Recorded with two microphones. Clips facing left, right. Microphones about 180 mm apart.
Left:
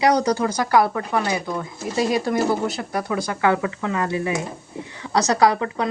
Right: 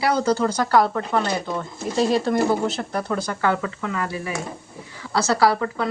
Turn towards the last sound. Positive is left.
turn(degrees=15)  # may be behind; listen again after turning